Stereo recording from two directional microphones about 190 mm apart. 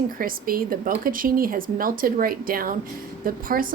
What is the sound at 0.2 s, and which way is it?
Speech, 50° right (ahead or behind).